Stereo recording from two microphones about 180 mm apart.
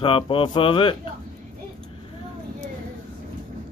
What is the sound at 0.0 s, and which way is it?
Speech, 30° left (ahead or behind).